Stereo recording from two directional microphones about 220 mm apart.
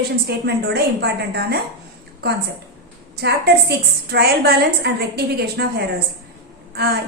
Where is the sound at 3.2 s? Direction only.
50° right (ahead or behind).